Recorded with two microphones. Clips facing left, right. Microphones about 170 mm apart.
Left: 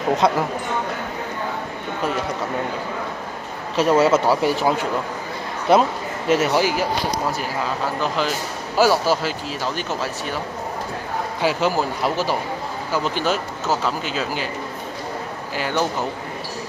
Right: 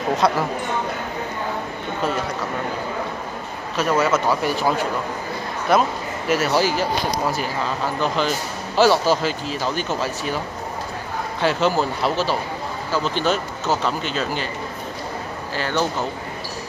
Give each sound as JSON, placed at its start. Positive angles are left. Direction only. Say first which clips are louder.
{"t": 0.2, "sound": "a man's voice", "louder": "even", "side_deg": 20}
{"t": 3.7, "sound": "a man's voice", "louder": "left 4 dB", "side_deg": 30}
{"t": 8.7, "sound": "speech", "louder": "right 1 dB", "side_deg": 10}
{"t": 11.4, "sound": "speech", "louder": "right 1 dB", "side_deg": 10}
{"t": 15.5, "sound": "speech", "louder": "even", "side_deg": 10}